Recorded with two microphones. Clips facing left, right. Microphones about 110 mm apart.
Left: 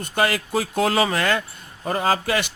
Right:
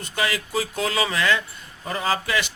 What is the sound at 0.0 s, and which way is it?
Speech, 50° left (ahead or behind).